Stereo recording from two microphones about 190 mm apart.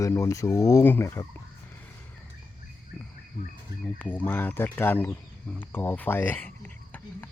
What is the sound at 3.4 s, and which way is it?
Speech, 45° left (ahead or behind).